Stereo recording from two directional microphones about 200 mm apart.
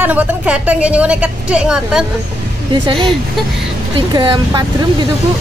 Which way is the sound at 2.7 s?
20° right (ahead or behind).